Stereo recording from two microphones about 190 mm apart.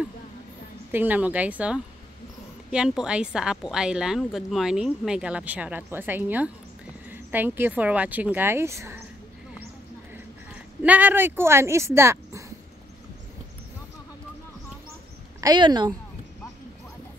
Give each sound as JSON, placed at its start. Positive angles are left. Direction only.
{"t": 0.9, "sound": "a woman's voice", "side_deg": -10}
{"t": 10.1, "sound": "speech", "side_deg": -10}
{"t": 15.4, "sound": "speech", "side_deg": -20}